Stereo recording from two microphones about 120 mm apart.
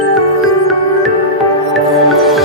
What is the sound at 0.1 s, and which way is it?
Music, centre (ahead or behind).